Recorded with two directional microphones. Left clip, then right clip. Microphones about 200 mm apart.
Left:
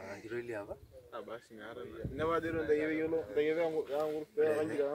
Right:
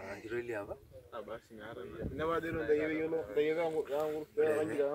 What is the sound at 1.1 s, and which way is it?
Speech, 30° right (ahead or behind).